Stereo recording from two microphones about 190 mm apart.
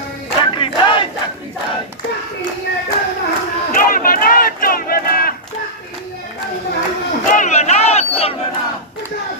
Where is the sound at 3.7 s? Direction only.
50° left (ahead or behind).